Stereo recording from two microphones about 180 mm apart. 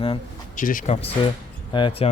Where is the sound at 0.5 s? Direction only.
50° left (ahead or behind).